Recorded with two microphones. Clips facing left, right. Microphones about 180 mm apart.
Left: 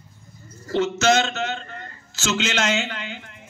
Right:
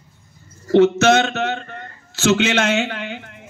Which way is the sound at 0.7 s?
60° right (ahead or behind).